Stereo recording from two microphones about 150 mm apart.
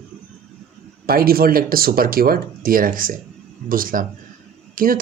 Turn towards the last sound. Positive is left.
turn(degrees=-65)  # may be behind; listen again after turning